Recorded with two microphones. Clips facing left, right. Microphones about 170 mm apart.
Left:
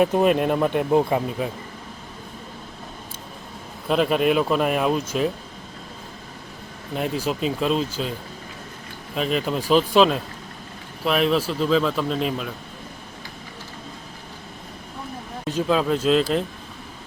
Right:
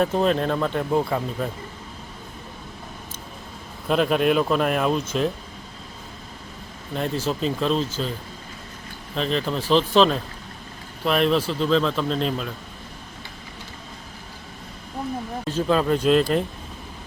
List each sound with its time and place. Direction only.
0.0 s speech: 10° left (ahead or behind)
3.8 s speech: centre (ahead or behind)
6.9 s speech: 5° left (ahead or behind)
9.1 s speech: 5° left (ahead or behind)
15.6 s speech: centre (ahead or behind)